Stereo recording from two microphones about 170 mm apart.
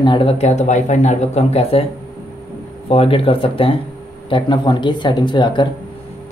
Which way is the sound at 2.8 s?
35° left (ahead or behind).